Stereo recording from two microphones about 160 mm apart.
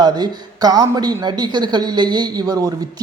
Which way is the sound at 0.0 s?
25° right (ahead or behind).